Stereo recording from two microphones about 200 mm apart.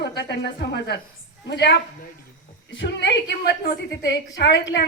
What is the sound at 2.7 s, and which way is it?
A woman's voice, 60° left (ahead or behind).